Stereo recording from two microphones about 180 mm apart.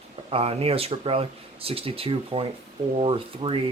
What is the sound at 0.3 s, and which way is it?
Speech, 35° right (ahead or behind).